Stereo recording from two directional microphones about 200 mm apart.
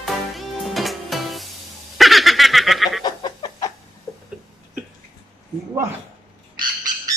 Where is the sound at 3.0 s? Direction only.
25° left (ahead or behind).